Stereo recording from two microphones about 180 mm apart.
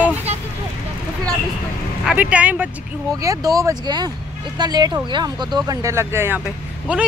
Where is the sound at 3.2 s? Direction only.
20° right (ahead or behind).